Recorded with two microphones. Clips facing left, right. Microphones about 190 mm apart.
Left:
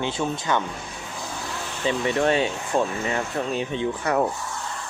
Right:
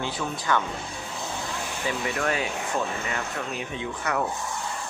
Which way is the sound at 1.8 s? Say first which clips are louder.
Left 6 dB; 25° left (ahead or behind).